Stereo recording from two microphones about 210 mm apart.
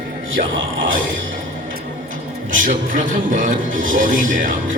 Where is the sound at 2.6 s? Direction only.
40° right (ahead or behind).